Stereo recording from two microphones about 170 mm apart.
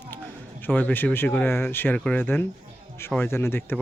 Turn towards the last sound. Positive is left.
turn(degrees=15)  # may be behind; listen again after turning